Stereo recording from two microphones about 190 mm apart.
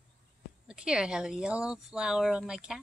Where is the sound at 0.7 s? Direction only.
5° right (ahead or behind).